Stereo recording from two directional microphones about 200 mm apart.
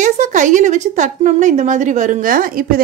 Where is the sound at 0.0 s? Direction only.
40° right (ahead or behind).